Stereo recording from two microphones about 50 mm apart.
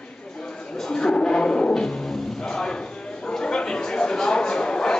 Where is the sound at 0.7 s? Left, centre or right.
Centre.